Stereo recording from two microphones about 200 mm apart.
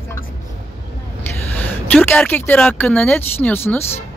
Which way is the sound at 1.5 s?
10° left (ahead or behind).